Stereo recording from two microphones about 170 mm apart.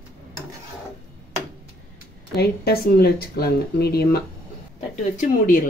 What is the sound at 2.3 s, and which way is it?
Speech, 65° left (ahead or behind).